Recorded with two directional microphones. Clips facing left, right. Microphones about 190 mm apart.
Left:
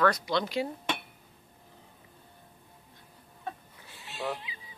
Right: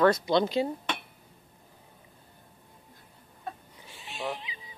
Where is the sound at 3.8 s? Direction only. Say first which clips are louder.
Even; 15° right (ahead or behind).